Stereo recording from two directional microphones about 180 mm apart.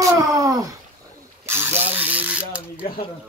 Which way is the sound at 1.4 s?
10° right (ahead or behind).